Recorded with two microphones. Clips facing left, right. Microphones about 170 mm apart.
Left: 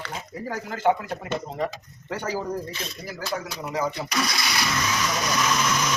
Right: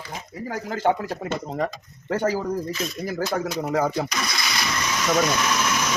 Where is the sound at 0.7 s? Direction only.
35° right (ahead or behind); by 4.1 s 50° right (ahead or behind).